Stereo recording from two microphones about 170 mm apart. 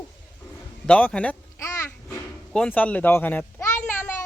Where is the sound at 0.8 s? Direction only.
5° left (ahead or behind).